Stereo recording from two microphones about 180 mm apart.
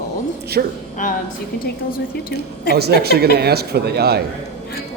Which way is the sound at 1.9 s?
55° left (ahead or behind).